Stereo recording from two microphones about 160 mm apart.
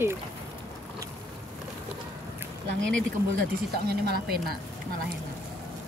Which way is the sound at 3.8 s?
80° right.